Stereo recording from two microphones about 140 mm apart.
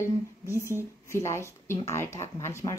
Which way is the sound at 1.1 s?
20° left (ahead or behind).